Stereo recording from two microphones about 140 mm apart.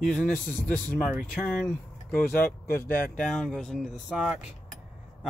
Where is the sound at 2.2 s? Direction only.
90° left.